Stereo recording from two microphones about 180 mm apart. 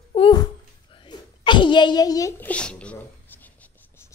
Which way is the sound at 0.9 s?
25° left (ahead or behind).